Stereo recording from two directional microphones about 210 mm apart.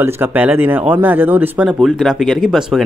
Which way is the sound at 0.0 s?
10° right (ahead or behind).